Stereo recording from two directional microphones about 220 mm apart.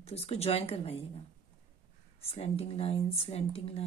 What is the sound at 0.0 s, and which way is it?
Speech, 30° left (ahead or behind).